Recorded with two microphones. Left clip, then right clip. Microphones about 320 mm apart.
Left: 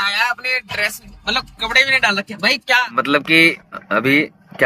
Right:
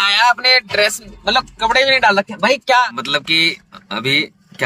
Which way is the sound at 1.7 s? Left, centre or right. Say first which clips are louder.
Right 1 dB; centre.